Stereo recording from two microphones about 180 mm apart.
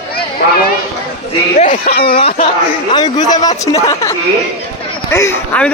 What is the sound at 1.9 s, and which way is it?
Speech, 60° left (ahead or behind).